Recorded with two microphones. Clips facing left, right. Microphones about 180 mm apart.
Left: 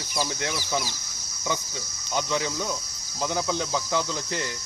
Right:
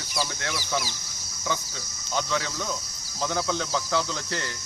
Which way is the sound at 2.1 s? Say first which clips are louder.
Left 1 dB; 15° left (ahead or behind).